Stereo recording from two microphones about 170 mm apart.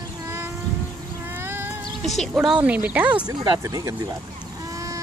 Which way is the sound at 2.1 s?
Centre (ahead or behind).